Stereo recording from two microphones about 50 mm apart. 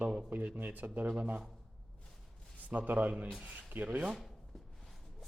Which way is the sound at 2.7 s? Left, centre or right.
Right.